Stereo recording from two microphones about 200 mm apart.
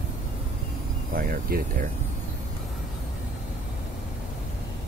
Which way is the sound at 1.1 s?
45° right (ahead or behind).